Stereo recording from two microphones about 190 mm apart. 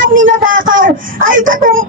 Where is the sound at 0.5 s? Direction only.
90° right.